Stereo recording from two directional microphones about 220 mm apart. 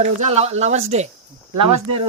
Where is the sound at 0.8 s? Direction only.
30° right (ahead or behind).